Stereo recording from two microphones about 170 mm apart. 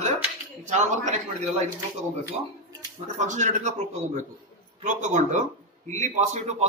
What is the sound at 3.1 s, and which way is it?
Speech, 45° right (ahead or behind).